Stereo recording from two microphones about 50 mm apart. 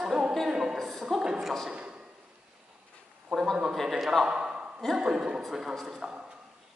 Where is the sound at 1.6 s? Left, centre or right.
Right.